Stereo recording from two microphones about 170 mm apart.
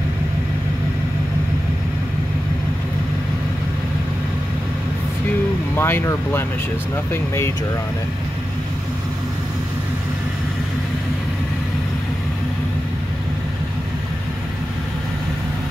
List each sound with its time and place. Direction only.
5.8 s speech: 10° left (ahead or behind)